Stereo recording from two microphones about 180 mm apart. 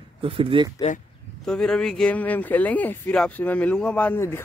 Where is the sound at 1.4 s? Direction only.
5° left (ahead or behind).